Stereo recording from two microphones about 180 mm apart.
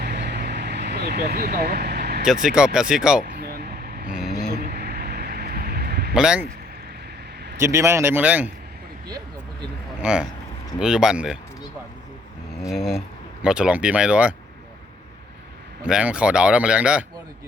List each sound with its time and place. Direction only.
0.0 s vehicle: 65° right (ahead or behind)
2.2 s speech: 5° right (ahead or behind)
3.2 s vehicle: 60° right (ahead or behind)
4.3 s a sound: 60° right (ahead or behind)
6.1 s speech: 5° right (ahead or behind)
7.6 s a man's voice: 15° right (ahead or behind)
10.0 s speech: 5° right (ahead or behind)
12.7 s speech: centre (ahead or behind)
15.8 s speech: 5° right (ahead or behind)